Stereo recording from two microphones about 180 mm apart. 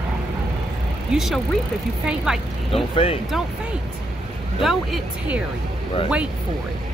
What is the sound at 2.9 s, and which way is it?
Speech, 30° left (ahead or behind).